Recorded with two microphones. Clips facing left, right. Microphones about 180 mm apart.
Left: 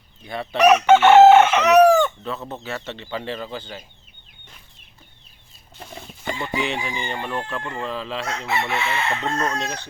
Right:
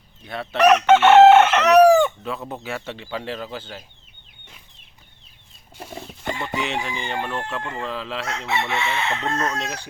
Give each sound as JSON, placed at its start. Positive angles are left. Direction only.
{"t": 0.3, "sound": "speech", "side_deg": 0}
{"t": 1.9, "sound": "chicken", "side_deg": -10}
{"t": 2.5, "sound": "speech", "side_deg": -15}
{"t": 5.7, "sound": "chicken", "side_deg": -5}
{"t": 6.4, "sound": "speech", "side_deg": 0}